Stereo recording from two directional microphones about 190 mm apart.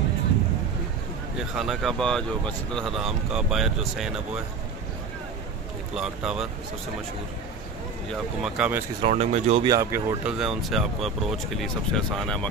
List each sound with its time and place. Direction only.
1.5 s speech: centre (ahead or behind)
5.9 s speech: 5° right (ahead or behind)
8.1 s speech: 5° right (ahead or behind)
9.0 s speech: 35° right (ahead or behind)
9.7 s speech: 15° right (ahead or behind)
10.3 s speech: centre (ahead or behind)